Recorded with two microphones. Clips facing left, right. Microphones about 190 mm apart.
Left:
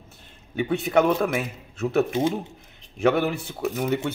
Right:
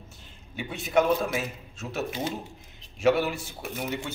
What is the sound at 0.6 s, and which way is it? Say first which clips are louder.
A man's voice: left 4 dB; 60° left (ahead or behind).